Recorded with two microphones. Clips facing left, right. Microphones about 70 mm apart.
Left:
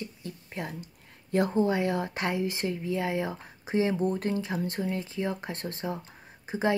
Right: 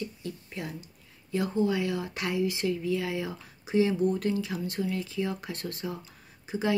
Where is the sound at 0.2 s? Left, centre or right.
Left.